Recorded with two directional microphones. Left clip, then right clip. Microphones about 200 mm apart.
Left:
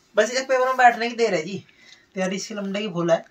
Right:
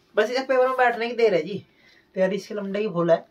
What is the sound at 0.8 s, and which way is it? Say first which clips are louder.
Speech: left 3 dB; 20° right (ahead or behind).